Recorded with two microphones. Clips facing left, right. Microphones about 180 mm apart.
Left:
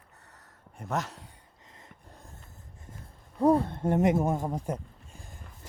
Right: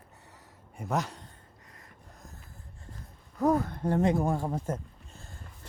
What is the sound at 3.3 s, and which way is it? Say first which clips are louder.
Speech: left 3 dB; 30° left (ahead or behind).